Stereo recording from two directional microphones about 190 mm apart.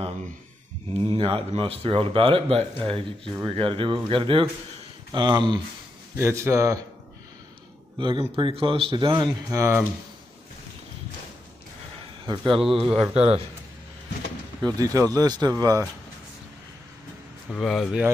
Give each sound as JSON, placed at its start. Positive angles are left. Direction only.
{"t": 0.9, "sound": "speech", "side_deg": -30}
{"t": 8.0, "sound": "speech", "side_deg": -25}
{"t": 12.6, "sound": "speech", "side_deg": 0}
{"t": 14.6, "sound": "speech", "side_deg": -20}
{"t": 17.5, "sound": "speech", "side_deg": 0}